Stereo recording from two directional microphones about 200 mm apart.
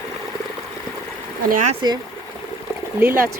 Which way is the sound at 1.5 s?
40° right (ahead or behind).